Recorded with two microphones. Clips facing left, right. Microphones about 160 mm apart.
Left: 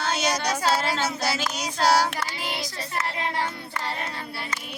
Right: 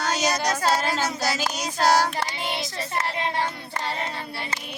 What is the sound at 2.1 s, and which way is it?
Child singing, 25° right (ahead or behind).